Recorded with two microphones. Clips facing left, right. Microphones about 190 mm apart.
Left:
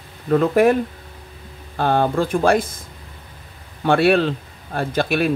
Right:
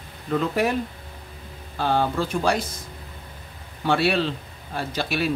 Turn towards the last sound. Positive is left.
turn(degrees=55)  # may be behind; listen again after turning